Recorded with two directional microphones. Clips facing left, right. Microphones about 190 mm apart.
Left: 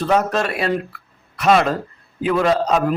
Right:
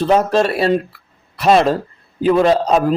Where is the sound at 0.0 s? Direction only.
30° right (ahead or behind).